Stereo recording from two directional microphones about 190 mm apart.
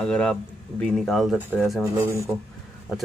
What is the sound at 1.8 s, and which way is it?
Speech, 15° right (ahead or behind).